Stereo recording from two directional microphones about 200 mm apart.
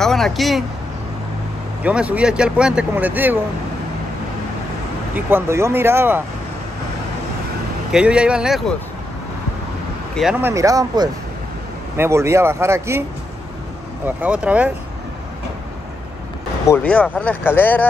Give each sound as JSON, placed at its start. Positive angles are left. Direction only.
{"t": 0.0, "sound": "speech", "side_deg": 0}
{"t": 1.8, "sound": "speech", "side_deg": -5}
{"t": 5.1, "sound": "speech", "side_deg": -10}
{"t": 7.9, "sound": "speech", "side_deg": -5}
{"t": 10.4, "sound": "speech", "side_deg": -15}
{"t": 14.0, "sound": "speech", "side_deg": -5}
{"t": 16.6, "sound": "speech", "side_deg": 10}